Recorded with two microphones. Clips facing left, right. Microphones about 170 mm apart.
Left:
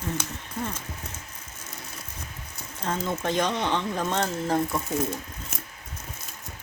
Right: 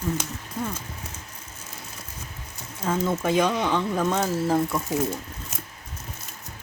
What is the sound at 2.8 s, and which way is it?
Speech, 5° right (ahead or behind).